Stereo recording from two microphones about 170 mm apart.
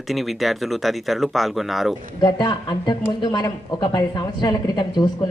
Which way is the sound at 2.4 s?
25° left (ahead or behind).